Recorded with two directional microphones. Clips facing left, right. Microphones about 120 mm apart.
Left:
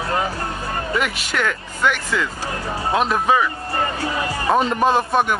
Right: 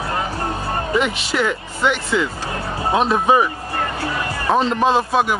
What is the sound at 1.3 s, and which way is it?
Speech, 10° right (ahead or behind).